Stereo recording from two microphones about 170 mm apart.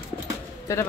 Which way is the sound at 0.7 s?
15° left (ahead or behind).